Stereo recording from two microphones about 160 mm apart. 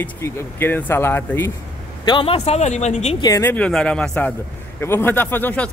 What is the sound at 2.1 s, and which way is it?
Speech, 35° left (ahead or behind).